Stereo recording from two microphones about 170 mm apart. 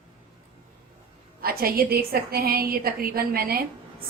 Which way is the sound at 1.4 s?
60° right (ahead or behind).